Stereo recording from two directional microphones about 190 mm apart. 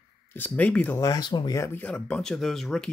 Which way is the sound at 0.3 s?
10° left (ahead or behind).